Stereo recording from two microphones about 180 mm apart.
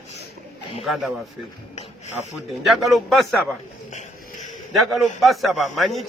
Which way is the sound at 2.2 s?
10° right (ahead or behind).